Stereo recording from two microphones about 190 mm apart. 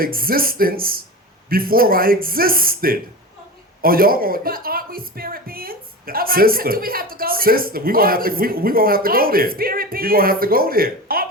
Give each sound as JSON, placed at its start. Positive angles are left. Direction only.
{"t": 0.0, "sound": "speech", "side_deg": -50}